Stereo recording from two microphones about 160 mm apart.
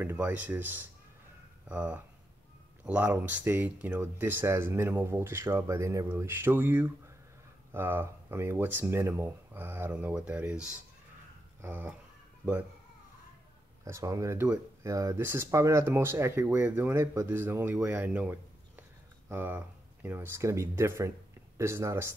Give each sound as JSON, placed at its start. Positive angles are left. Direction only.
{"t": 0.0, "sound": "speech", "side_deg": -10}
{"t": 13.8, "sound": "speech", "side_deg": -20}